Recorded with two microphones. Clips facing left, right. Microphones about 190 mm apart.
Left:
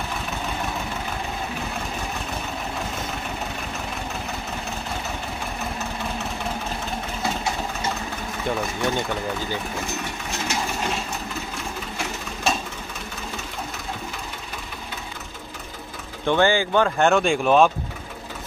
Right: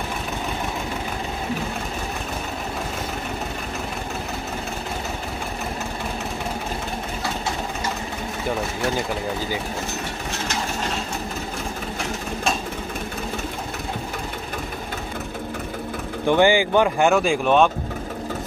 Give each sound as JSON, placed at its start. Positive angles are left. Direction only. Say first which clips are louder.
{"t": 8.5, "sound": "speech", "louder": "even", "side_deg": -5}
{"t": 16.3, "sound": "speech", "louder": "right 3 dB", "side_deg": -15}